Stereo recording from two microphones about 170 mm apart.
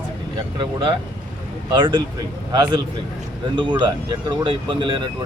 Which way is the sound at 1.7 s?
30° right (ahead or behind).